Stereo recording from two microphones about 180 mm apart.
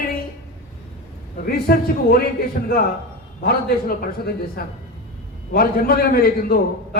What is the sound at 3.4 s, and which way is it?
A man's voice, 55° left (ahead or behind).